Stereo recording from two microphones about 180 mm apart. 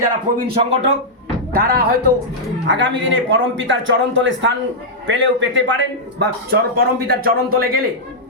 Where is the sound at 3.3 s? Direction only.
90° right; by 7.8 s 55° right (ahead or behind).